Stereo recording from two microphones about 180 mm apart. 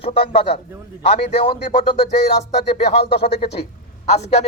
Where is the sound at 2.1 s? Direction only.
65° left (ahead or behind).